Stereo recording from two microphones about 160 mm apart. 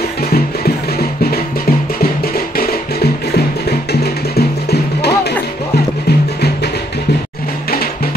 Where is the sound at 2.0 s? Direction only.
70° left (ahead or behind).